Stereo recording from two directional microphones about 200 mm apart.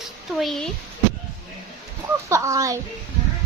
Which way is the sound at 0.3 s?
Centre (ahead or behind).